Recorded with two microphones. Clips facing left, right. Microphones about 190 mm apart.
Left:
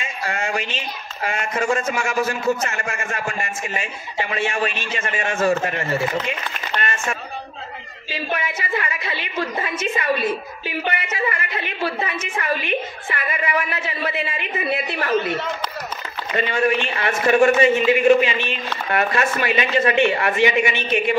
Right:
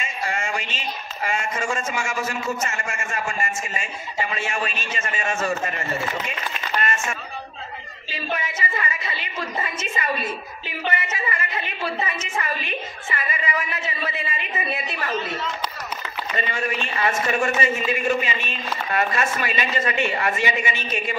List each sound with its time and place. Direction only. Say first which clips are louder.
0.0 s a sound: left 2 dB; 65° left (ahead or behind)
1.2 s a woman's voice: left 3 dB; 60° left (ahead or behind)
8.1 s a woman's voice: left 3 dB; 65° left (ahead or behind)